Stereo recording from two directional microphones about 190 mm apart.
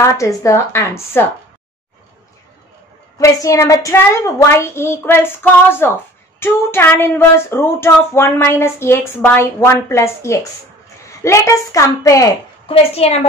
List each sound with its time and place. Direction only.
0.0 s speech: 15° left (ahead or behind)
3.2 s speech: 15° left (ahead or behind)
12.6 s a woman's voice: 30° left (ahead or behind)